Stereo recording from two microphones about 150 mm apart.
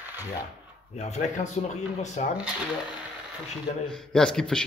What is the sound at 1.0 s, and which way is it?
Speech, 50° left (ahead or behind).